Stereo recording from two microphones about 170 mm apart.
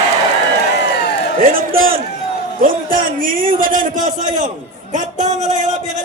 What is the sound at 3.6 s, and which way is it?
A man's voice, 50° right (ahead or behind).